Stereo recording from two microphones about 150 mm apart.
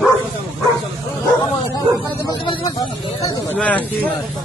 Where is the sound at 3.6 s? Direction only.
10° left (ahead or behind).